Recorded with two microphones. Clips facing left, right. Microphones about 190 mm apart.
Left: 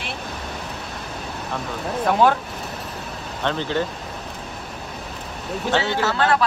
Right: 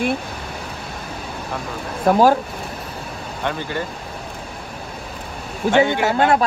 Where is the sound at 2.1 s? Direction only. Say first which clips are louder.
Right 4 dB; 40° right (ahead or behind).